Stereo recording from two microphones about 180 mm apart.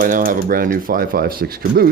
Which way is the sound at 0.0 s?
50° right (ahead or behind).